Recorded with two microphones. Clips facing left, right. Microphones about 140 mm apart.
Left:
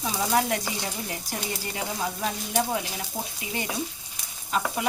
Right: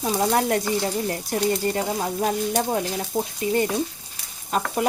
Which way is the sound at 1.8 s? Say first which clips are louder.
Right 6 dB; 45° right (ahead or behind).